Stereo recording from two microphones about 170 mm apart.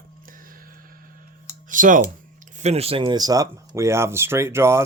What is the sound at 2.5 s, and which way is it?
Speech, 40° right (ahead or behind).